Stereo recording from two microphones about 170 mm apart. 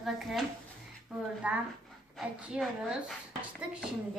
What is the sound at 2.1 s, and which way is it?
Child singing, 5° right (ahead or behind).